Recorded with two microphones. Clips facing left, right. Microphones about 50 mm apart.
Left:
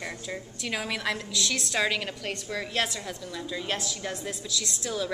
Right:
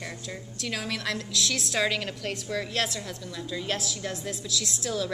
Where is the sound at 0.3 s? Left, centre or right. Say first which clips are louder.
Left 1 dB; centre.